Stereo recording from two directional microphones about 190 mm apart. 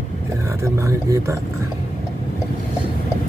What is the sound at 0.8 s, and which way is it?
Speech, 15° right (ahead or behind).